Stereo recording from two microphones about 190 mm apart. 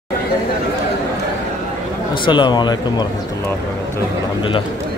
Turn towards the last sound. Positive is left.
turn(degrees=20)  # may be behind; listen again after turning